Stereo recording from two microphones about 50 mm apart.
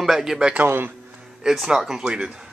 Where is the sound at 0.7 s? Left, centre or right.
Right.